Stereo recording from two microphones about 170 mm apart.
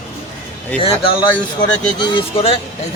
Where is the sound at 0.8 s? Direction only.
30° left (ahead or behind).